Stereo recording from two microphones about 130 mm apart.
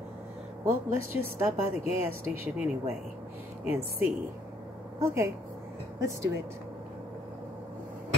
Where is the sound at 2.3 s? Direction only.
10° right (ahead or behind).